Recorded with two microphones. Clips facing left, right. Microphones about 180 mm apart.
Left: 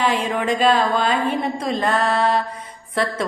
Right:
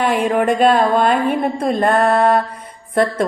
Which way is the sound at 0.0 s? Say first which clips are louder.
Right 5 dB; 60° right (ahead or behind).